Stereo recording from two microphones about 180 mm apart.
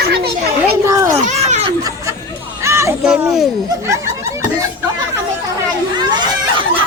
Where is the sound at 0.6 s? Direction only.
15° right (ahead or behind).